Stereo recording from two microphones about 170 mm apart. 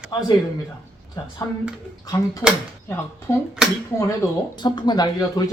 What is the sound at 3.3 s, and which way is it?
Speech, 20° left (ahead or behind).